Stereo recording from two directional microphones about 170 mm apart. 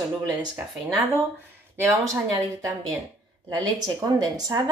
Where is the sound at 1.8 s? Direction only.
20° right (ahead or behind).